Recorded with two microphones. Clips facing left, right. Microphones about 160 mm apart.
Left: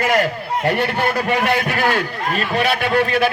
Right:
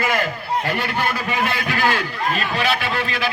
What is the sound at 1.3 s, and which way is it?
A man's voice, 65° left (ahead or behind).